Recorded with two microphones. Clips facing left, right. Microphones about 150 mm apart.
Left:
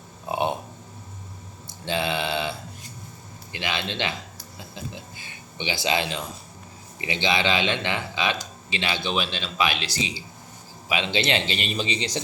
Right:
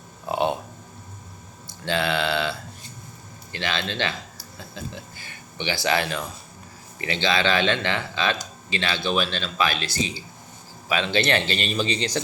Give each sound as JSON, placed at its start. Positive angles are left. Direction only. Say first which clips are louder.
{"t": 0.3, "sound": "a sound", "louder": "right 2 dB", "side_deg": 20}
{"t": 1.8, "sound": "mantra", "louder": "right 2 dB", "side_deg": 20}
{"t": 3.5, "sound": "speech", "louder": "right 1 dB", "side_deg": 15}
{"t": 10.8, "sound": "speech", "louder": "right 2 dB", "side_deg": 15}